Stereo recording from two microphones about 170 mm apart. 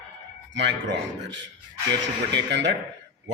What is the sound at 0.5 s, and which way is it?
A man's voice, 90° right.